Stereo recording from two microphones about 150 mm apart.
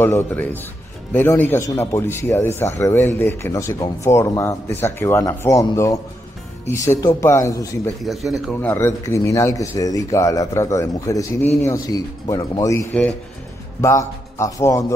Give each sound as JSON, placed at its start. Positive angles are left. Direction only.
{"t": 0.0, "sound": "speech", "side_deg": 15}
{"t": 8.0, "sound": "speech", "side_deg": 0}
{"t": 8.6, "sound": "speech", "side_deg": 15}